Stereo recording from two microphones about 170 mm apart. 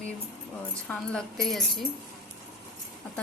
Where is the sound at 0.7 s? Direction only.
5° left (ahead or behind).